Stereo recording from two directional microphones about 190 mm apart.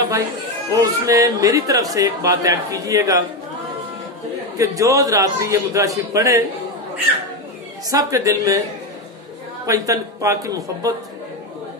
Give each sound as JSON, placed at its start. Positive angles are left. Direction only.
{"t": 0.7, "sound": "speech", "side_deg": -15}
{"t": 4.6, "sound": "speech", "side_deg": -20}
{"t": 7.9, "sound": "speech", "side_deg": -20}
{"t": 9.7, "sound": "speech", "side_deg": -15}